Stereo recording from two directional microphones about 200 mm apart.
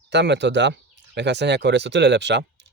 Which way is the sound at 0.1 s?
60° right (ahead or behind).